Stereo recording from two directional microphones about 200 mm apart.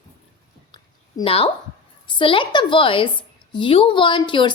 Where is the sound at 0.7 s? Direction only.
25° left (ahead or behind).